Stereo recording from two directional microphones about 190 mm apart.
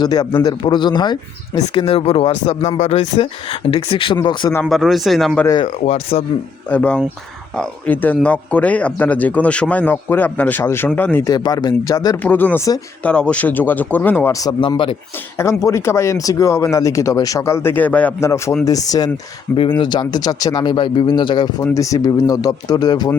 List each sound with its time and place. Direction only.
0.0 s a man's voice: 20° left (ahead or behind)
4.6 s a man's voice: centre (ahead or behind)
5.5 s a man's voice: 25° left (ahead or behind)
6.7 s speech: 5° left (ahead or behind); by 14.9 s 25° left (ahead or behind)
15.4 s a man's voice: 15° left (ahead or behind)